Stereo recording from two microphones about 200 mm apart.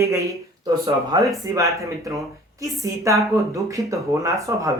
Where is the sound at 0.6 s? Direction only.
20° right (ahead or behind).